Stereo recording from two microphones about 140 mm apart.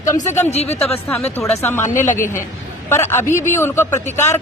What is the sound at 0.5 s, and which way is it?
Speech, 50° left (ahead or behind).